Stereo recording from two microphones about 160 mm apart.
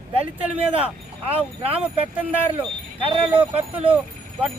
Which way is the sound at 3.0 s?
30° right (ahead or behind).